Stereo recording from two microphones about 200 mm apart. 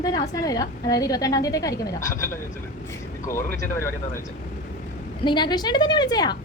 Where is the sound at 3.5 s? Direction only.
15° left (ahead or behind).